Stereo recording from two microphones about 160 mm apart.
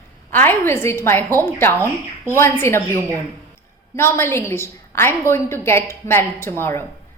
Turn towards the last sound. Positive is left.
turn(degrees=15)  # may be behind; listen again after turning